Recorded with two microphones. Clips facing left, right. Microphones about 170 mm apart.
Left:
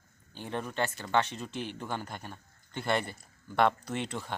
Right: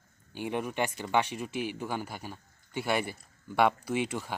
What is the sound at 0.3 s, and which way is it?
Speech, 10° right (ahead or behind).